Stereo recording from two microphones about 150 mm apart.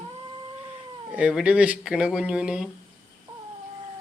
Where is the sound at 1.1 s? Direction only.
10° right (ahead or behind).